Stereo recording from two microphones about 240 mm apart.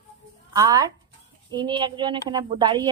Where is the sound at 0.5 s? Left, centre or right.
Centre.